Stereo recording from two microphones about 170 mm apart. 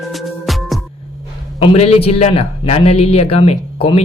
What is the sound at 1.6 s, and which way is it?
Speech, 35° left (ahead or behind).